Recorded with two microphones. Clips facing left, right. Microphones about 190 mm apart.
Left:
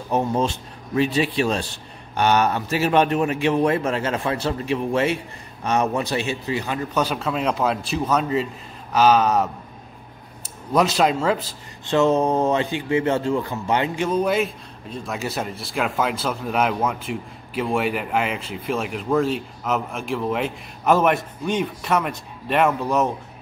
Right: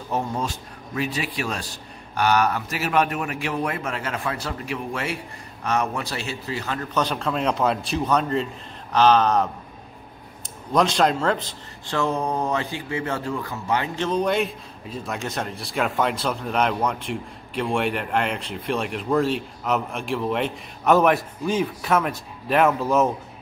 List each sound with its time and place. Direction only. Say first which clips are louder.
0.1 s a man's voice: left 5 dB; 20° left (ahead or behind)
10.7 s a man's voice: left 1 dB; 5° left (ahead or behind)
11.8 s a man's voice: left 6 dB; 20° left (ahead or behind)
13.9 s a man's voice: right 1 dB; 10° left (ahead or behind)